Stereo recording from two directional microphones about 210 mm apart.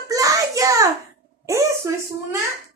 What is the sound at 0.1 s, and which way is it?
Hands, 15° right (ahead or behind).